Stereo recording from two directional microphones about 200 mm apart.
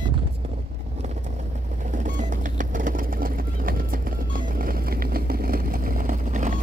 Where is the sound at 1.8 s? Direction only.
40° right (ahead or behind).